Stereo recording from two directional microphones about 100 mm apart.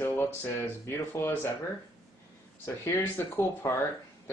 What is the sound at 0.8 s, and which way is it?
Speech, 25° left (ahead or behind).